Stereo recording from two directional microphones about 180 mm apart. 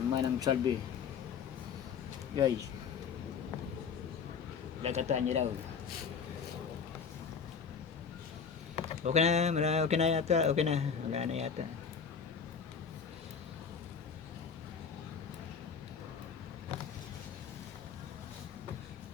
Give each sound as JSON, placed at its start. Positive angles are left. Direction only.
{"t": 0.1, "sound": "speech", "side_deg": -20}
{"t": 2.3, "sound": "speech", "side_deg": -20}
{"t": 4.8, "sound": "speech", "side_deg": -35}
{"t": 9.0, "sound": "speech", "side_deg": -40}